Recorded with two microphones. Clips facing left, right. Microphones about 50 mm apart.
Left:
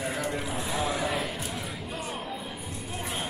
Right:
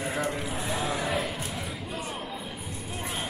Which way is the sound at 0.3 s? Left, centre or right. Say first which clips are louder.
Even; centre.